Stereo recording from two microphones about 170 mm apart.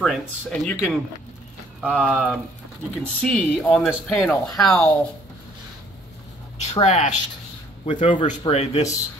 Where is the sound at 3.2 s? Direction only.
5° left (ahead or behind).